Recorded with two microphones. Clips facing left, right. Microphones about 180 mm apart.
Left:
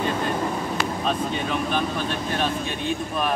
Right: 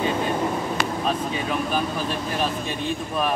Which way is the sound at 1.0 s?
5° right (ahead or behind).